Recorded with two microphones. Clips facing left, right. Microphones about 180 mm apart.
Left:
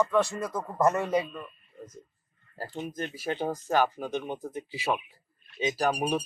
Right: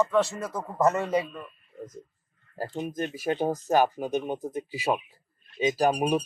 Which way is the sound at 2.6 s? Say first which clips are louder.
Right 4 dB; 15° right (ahead or behind).